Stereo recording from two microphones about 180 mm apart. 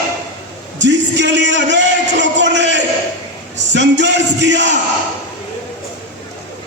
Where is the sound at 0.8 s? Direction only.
80° right.